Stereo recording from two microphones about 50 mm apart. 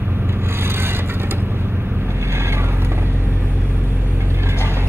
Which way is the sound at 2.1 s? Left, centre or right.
Right.